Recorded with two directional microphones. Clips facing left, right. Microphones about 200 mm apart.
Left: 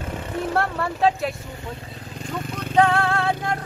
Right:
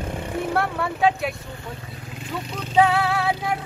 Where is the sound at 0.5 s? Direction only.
Centre (ahead or behind).